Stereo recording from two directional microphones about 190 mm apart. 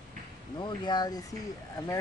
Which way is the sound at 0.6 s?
20° left (ahead or behind).